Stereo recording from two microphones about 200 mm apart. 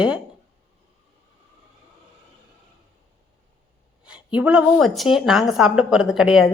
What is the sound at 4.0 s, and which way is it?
A woman's voice, 5° right (ahead or behind).